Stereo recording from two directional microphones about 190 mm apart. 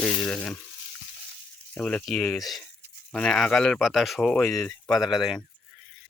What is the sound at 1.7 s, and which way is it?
Speech, 5° left (ahead or behind).